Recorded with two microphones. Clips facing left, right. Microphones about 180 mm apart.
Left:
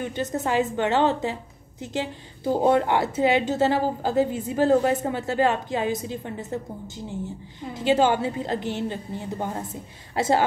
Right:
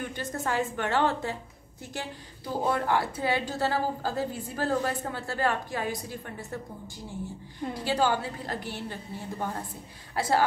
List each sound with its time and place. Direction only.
0.0 s a woman's voice: 20° left (ahead or behind)
2.6 s a woman's voice: 25° left (ahead or behind)
7.7 s a woman's voice: 20° left (ahead or behind)